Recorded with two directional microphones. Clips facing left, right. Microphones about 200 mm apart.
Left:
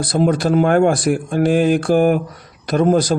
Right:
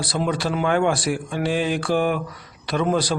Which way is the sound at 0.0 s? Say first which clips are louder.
Left 7 dB; 45° left (ahead or behind).